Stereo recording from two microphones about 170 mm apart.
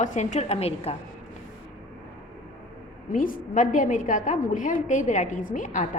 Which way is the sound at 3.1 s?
50° left (ahead or behind).